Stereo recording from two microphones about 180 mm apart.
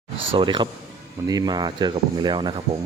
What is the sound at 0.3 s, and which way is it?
Speech, 25° right (ahead or behind).